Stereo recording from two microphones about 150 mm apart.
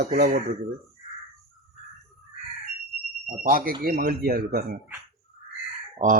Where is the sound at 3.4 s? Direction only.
70° right (ahead or behind).